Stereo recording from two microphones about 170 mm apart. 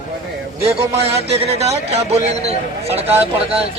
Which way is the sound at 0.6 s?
35° right (ahead or behind).